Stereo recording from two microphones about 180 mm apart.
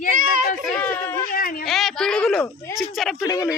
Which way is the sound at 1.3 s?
55° left (ahead or behind).